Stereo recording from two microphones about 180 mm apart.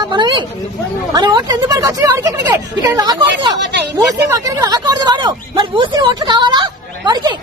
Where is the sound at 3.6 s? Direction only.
70° right (ahead or behind).